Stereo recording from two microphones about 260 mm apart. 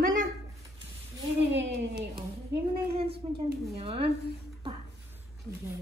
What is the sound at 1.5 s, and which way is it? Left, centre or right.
Speech, right.